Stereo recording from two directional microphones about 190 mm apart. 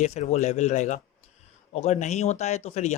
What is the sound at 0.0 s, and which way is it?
A man's voice, 35° left (ahead or behind).